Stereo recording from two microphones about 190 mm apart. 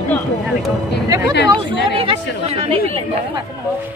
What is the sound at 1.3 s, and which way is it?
Speech, 65° left (ahead or behind).